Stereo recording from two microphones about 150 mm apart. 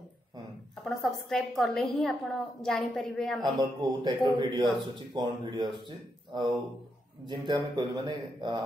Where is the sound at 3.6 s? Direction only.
30° right (ahead or behind).